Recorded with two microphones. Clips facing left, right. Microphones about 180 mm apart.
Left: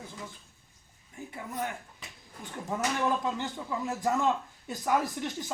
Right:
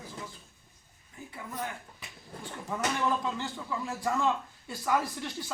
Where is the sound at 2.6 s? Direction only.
15° left (ahead or behind).